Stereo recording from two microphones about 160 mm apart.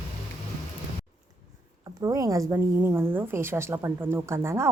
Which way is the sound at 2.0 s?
20° right (ahead or behind).